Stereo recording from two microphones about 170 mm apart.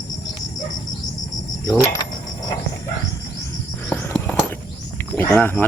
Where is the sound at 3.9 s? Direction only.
10° left (ahead or behind).